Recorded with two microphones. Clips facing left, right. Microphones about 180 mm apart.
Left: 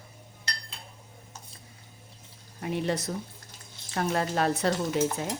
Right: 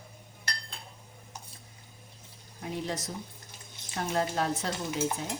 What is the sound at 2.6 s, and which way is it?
A woman's voice, 65° left (ahead or behind).